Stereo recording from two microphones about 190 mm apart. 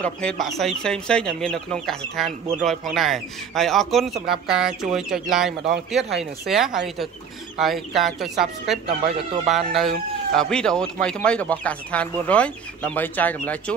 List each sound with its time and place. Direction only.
0.0 s speech: 5° left (ahead or behind)
8.8 s speech: 25° right (ahead or behind)
9.5 s speech: centre (ahead or behind)